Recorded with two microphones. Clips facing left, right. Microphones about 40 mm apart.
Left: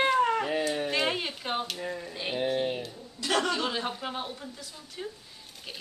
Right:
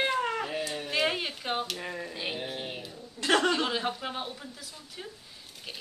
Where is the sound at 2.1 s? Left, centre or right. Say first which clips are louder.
Left 1 dB; centre.